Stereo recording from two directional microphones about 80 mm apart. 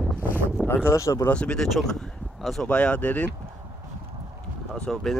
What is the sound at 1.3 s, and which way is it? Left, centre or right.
Speech, centre.